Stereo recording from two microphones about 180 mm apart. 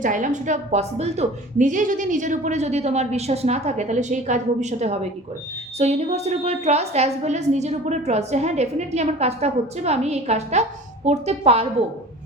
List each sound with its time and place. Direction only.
0.0 s a woman's voice: 45° right (ahead or behind)